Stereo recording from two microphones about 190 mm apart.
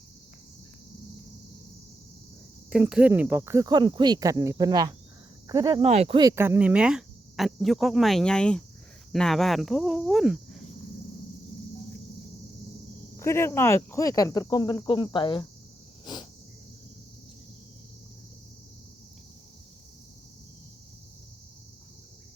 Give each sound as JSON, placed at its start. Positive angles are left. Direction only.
{"t": 2.6, "sound": "speech", "side_deg": -5}
{"t": 5.8, "sound": "speech", "side_deg": -35}
{"t": 6.1, "sound": "speech", "side_deg": -15}
{"t": 13.1, "sound": "speech", "side_deg": 15}
{"t": 16.1, "sound": "cricket", "side_deg": 25}